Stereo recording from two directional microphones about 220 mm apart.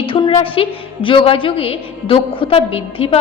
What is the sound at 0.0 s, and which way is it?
A woman's voice, 25° left (ahead or behind).